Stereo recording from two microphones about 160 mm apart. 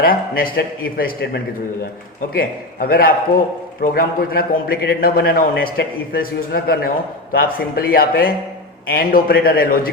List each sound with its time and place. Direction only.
0.0 s a man's voice: 65° left (ahead or behind)
2.3 s a man's voice: 70° left (ahead or behind)